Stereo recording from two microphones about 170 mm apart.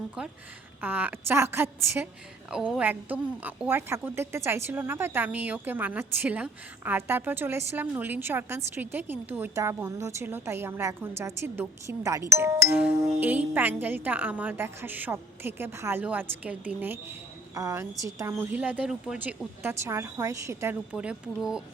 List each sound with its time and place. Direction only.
0.2 s a woman's voice: 5° right (ahead or behind)